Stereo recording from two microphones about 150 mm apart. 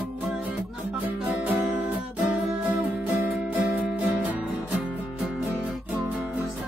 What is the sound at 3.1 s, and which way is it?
Music, 10° right (ahead or behind).